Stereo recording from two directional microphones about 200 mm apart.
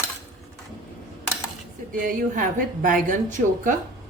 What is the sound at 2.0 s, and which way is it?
Speech, 40° right (ahead or behind).